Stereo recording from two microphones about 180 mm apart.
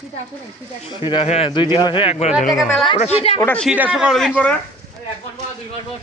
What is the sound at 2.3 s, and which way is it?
Speech, centre (ahead or behind).